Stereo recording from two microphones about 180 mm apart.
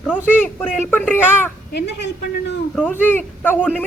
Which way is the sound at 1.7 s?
70° left (ahead or behind).